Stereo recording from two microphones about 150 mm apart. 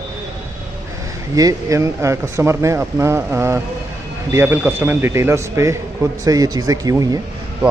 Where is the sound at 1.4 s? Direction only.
25° right (ahead or behind).